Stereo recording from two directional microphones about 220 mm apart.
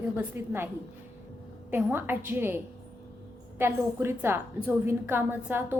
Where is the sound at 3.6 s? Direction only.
10° right (ahead or behind).